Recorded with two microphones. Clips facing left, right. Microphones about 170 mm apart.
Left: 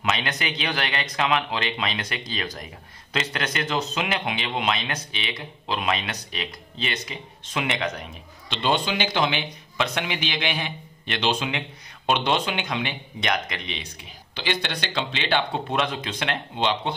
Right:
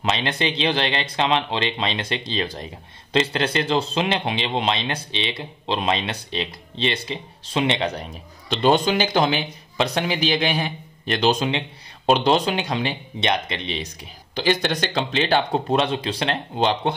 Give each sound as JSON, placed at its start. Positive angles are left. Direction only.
{"t": 0.0, "sound": "speech", "side_deg": -30}